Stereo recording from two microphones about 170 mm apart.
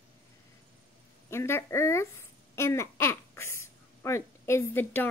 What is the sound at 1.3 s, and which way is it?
A woman's voice, 15° left (ahead or behind).